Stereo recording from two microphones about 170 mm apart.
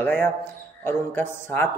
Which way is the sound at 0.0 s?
10° left (ahead or behind).